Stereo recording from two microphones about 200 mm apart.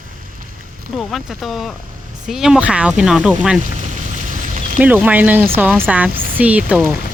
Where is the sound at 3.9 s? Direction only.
40° right (ahead or behind).